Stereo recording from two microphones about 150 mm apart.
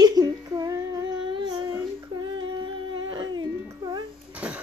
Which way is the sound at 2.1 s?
30° right (ahead or behind).